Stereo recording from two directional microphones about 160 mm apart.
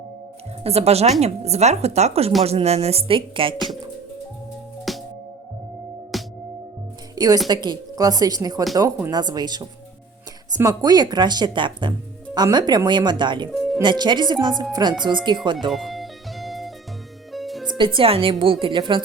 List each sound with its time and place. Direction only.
0.6 s speech: 40° right (ahead or behind)
4.9 s music: centre (ahead or behind)
6.1 s music: centre (ahead or behind)
7.4 s speech: 25° right (ahead or behind)
13.5 s music: centre (ahead or behind)
13.8 s speech: 30° right (ahead or behind)
15.7 s music: centre (ahead or behind)
17.7 s speech: 30° right (ahead or behind)